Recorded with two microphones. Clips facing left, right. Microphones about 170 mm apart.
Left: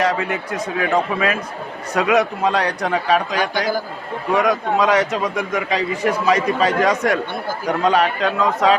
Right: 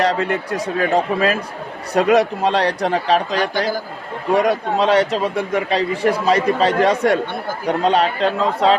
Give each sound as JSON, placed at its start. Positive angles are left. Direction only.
{"t": 0.0, "sound": "a man's voice", "side_deg": -35}